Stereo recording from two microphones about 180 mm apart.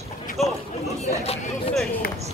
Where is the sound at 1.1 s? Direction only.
35° left (ahead or behind).